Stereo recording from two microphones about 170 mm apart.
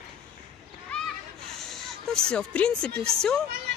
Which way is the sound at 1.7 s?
5° left (ahead or behind).